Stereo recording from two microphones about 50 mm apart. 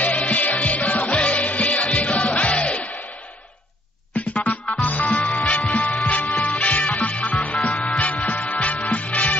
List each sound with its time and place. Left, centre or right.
0.0 s music: left
4.1 s music: left